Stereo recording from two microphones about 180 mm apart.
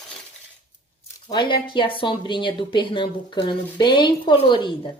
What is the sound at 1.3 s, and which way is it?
Speech, 25° left (ahead or behind).